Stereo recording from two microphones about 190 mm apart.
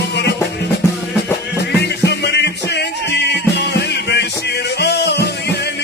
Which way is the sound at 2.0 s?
60° left (ahead or behind).